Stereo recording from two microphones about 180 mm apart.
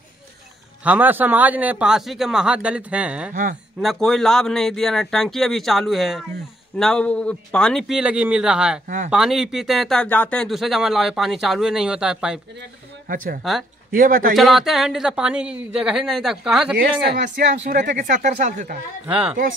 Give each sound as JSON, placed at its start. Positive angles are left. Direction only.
{"t": 0.8, "sound": "a man's voice", "side_deg": -10}
{"t": 8.8, "sound": "speech", "side_deg": -45}
{"t": 9.1, "sound": "speech", "side_deg": -5}
{"t": 13.1, "sound": "speech", "side_deg": -50}
{"t": 13.4, "sound": "speech", "side_deg": 0}
{"t": 13.9, "sound": "speech", "side_deg": -50}
{"t": 14.3, "sound": "speech", "side_deg": 0}
{"t": 17.6, "sound": "speech", "side_deg": -45}
{"t": 19.0, "sound": "a man's voice", "side_deg": -5}